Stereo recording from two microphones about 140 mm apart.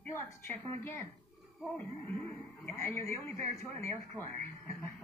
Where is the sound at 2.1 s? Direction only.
15° left (ahead or behind).